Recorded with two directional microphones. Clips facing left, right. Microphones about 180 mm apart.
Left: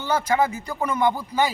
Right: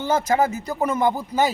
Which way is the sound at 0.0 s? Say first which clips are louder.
Right 2 dB; 45° right (ahead or behind).